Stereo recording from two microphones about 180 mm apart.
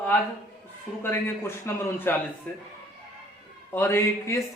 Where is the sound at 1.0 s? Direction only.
15° left (ahead or behind).